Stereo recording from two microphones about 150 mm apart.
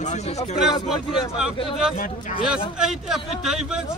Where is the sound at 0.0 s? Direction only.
50° left (ahead or behind).